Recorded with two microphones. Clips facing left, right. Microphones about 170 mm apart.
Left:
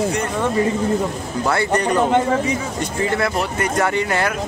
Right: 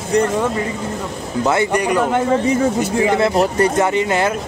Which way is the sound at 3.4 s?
35° right (ahead or behind).